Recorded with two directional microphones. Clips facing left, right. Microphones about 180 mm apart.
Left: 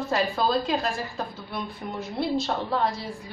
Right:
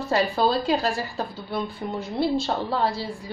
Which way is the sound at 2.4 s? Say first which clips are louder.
Right 1 dB; 30° right (ahead or behind).